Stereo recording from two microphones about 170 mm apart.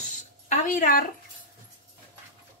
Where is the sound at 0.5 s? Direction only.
50° left (ahead or behind).